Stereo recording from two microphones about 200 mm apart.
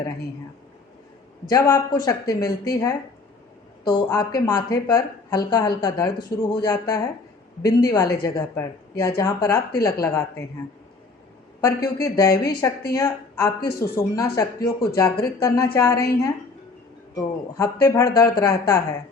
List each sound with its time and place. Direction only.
1.5 s speech: 15° left (ahead or behind)
11.6 s speech: 15° left (ahead or behind)
17.2 s speech: 15° left (ahead or behind)